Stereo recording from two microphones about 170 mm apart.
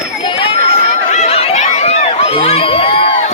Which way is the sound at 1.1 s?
40° left (ahead or behind).